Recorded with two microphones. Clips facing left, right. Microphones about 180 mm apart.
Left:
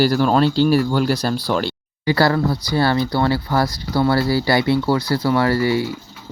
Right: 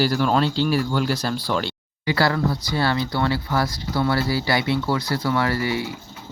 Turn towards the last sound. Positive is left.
turn(degrees=35)  # may be behind; listen again after turning